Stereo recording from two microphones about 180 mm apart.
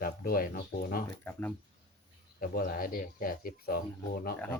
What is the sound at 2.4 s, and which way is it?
Speech, 55° left (ahead or behind).